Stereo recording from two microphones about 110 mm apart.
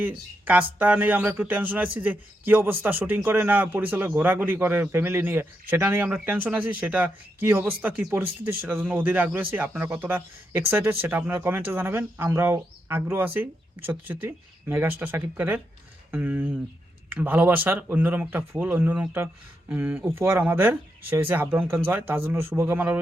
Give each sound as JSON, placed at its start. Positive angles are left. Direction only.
{"t": 0.0, "sound": "speech", "side_deg": -10}